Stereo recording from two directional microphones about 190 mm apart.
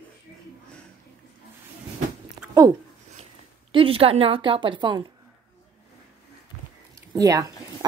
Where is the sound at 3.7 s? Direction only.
30° right (ahead or behind).